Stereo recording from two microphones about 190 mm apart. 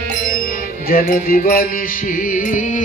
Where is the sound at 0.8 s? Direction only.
50° left (ahead or behind).